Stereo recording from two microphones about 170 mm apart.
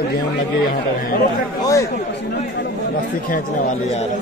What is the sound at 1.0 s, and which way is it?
Speech, 55° left (ahead or behind).